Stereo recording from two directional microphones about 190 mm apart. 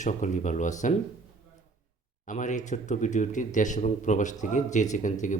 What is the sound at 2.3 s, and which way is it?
Speech, 40° left (ahead or behind).